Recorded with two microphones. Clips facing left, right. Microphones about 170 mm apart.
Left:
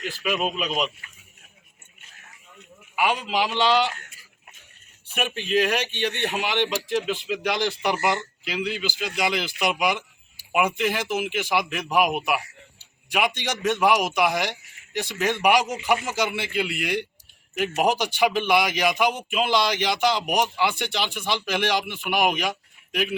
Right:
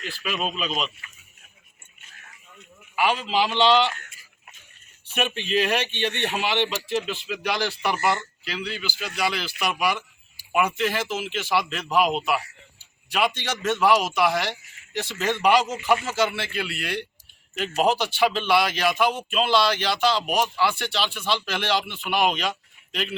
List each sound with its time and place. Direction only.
0.0 s a man's voice: 10° left (ahead or behind)
2.9 s a man's voice: 10° left (ahead or behind)
5.0 s a man's voice: 10° left (ahead or behind)